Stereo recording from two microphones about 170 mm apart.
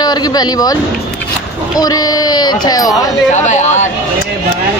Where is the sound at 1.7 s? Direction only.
20° left (ahead or behind).